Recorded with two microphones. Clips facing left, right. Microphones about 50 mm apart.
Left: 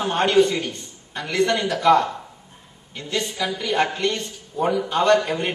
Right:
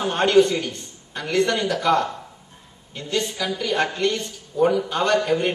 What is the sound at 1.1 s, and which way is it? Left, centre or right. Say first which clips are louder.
Speech: right 2 dB; left.